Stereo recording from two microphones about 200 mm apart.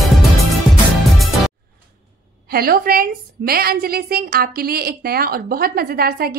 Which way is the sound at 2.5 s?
50° right (ahead or behind).